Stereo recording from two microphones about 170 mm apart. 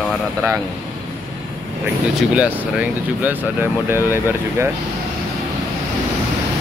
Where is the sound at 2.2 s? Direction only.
5° right (ahead or behind).